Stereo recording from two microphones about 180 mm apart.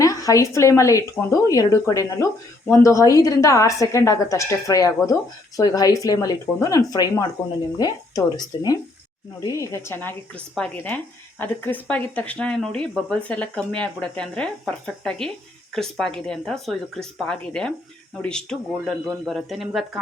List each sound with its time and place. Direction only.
0.0 s speech: 20° left (ahead or behind); by 20.0 s centre (ahead or behind)